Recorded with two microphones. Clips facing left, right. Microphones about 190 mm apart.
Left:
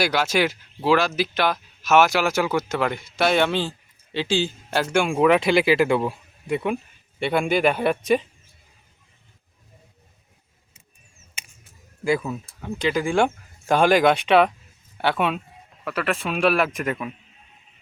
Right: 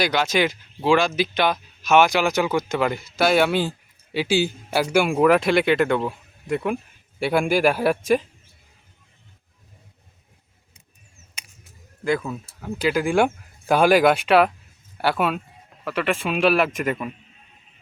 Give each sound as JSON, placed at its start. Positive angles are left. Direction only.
{"t": 0.0, "sound": "speech", "side_deg": 5}
{"t": 12.0, "sound": "speech", "side_deg": 5}